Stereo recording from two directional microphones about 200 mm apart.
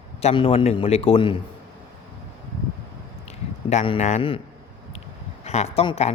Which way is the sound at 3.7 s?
35° left (ahead or behind).